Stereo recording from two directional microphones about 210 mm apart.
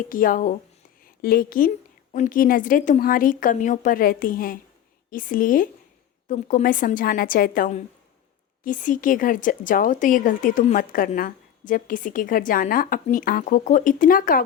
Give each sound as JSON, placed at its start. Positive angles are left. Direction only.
{"t": 0.1, "sound": "a woman's voice", "side_deg": 40}